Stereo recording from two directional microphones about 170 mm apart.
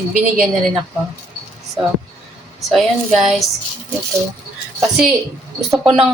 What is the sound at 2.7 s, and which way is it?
Speech, centre (ahead or behind).